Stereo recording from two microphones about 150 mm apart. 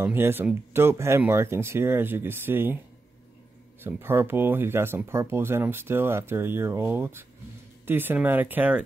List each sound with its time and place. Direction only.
0.0 s speech: 15° right (ahead or behind)
3.8 s speech: 15° right (ahead or behind)